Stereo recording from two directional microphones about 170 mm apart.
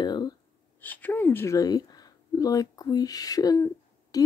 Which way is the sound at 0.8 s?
10° left (ahead or behind).